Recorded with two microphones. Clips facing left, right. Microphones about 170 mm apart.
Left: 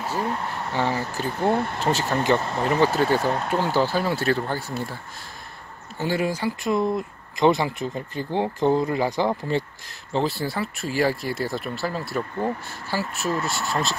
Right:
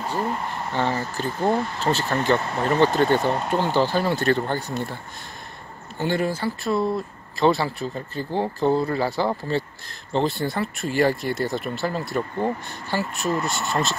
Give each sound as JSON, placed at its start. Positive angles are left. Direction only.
{"t": 0.0, "sound": "a sound", "side_deg": 5}
{"t": 0.7, "sound": "speech", "side_deg": 10}
{"t": 5.9, "sound": "speech", "side_deg": 5}